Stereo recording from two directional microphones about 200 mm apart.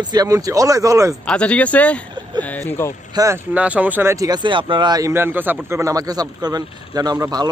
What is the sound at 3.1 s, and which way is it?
Speech, 15° right (ahead or behind).